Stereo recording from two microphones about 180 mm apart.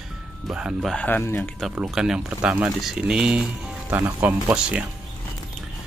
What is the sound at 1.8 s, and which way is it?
Speech, 5° right (ahead or behind).